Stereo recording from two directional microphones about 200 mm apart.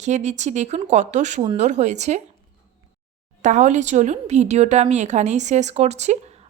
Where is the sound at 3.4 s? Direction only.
40° right (ahead or behind).